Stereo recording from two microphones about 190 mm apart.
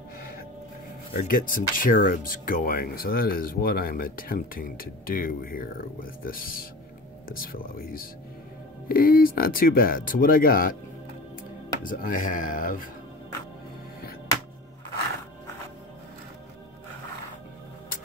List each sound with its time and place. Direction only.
1.2 s speech: 50° left (ahead or behind)
11.8 s speech: 45° left (ahead or behind)